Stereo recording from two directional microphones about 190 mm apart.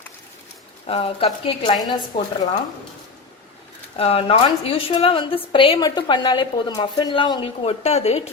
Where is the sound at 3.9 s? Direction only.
30° left (ahead or behind).